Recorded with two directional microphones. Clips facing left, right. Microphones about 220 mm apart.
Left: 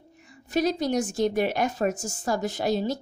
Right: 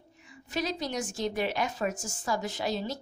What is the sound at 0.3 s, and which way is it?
A woman's voice, 45° left (ahead or behind).